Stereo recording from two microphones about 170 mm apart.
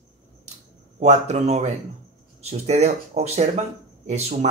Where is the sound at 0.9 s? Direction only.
40° right (ahead or behind).